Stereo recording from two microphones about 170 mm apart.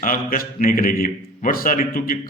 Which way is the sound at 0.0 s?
55° left (ahead or behind).